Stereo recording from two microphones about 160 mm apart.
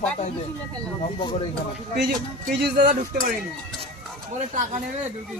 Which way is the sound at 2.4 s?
90° right.